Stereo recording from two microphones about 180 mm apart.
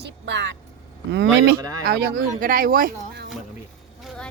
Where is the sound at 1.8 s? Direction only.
55° right (ahead or behind).